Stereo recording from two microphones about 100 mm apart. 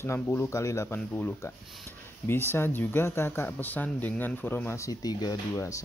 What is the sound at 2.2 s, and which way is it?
Speech, 25° left (ahead or behind).